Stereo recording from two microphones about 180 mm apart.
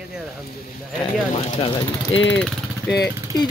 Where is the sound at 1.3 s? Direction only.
30° left (ahead or behind).